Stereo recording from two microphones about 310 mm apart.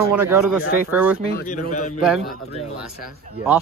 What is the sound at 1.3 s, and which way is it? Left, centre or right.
Speech, left.